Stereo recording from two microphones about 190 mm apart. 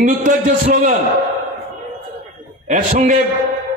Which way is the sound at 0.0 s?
45° right (ahead or behind).